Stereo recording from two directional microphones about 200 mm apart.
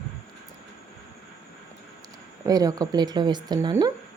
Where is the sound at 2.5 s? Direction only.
20° right (ahead or behind).